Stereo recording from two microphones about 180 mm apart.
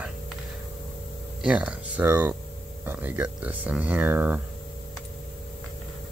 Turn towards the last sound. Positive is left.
turn(degrees=-10)  # may be behind; listen again after turning